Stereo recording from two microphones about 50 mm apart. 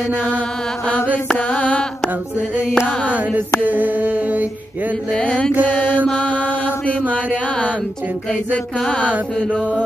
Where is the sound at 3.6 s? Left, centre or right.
Right.